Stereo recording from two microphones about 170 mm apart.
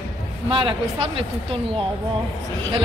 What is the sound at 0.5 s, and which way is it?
Speech, 30° right (ahead or behind).